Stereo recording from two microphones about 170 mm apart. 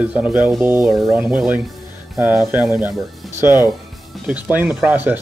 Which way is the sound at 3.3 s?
15° right (ahead or behind).